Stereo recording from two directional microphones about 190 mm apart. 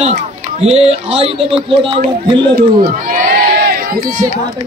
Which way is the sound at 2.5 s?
50° right (ahead or behind).